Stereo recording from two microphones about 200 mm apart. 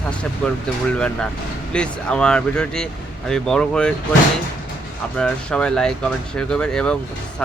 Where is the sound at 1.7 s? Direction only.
5° left (ahead or behind).